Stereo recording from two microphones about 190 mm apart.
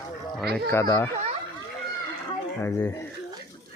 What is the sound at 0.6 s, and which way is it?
Speech, 15° left (ahead or behind).